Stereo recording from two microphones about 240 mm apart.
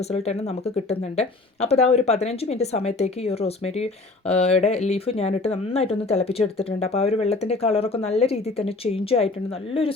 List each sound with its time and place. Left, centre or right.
0.1 s speech: left